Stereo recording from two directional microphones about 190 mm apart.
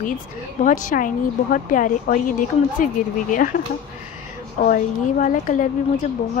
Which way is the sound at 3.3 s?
45° left (ahead or behind).